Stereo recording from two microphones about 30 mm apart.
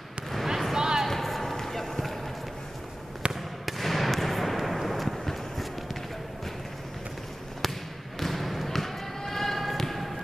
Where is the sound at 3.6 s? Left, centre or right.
Centre.